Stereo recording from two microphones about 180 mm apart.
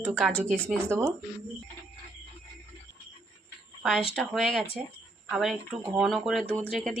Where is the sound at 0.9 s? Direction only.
15° right (ahead or behind).